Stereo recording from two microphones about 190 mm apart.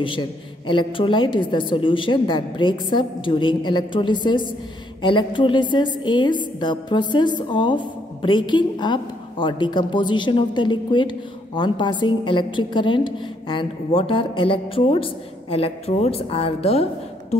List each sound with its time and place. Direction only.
0.0 s a woman's voice: 25° left (ahead or behind)